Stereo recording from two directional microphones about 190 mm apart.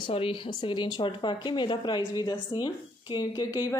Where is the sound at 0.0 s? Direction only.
25° left (ahead or behind).